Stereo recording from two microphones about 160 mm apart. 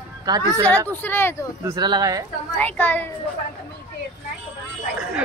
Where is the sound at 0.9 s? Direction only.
10° left (ahead or behind).